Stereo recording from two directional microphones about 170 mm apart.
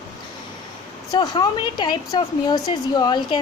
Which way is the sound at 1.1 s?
25° left (ahead or behind).